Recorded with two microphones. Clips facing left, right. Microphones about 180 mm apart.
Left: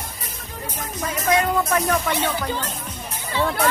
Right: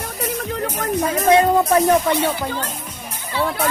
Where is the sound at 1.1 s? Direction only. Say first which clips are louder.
Right 5 dB; 30° right (ahead or behind).